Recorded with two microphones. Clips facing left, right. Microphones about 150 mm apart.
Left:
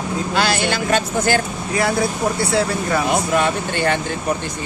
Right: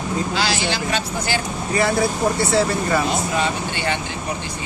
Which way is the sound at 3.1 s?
55° left (ahead or behind).